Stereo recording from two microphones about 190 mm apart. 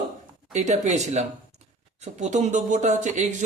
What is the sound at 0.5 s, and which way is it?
Speech, 40° right (ahead or behind).